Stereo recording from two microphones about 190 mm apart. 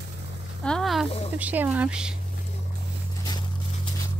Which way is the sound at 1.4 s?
10° right (ahead or behind).